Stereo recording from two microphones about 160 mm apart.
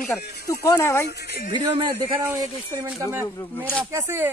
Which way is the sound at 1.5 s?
30° right (ahead or behind).